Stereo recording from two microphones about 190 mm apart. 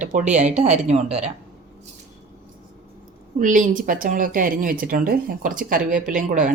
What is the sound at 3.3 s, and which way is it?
Speech, 45° right (ahead or behind).